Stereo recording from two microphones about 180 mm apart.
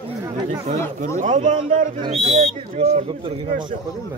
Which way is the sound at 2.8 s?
35° right (ahead or behind).